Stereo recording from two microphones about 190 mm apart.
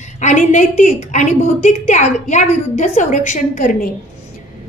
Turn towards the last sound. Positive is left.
turn(degrees=45)  # may be behind; listen again after turning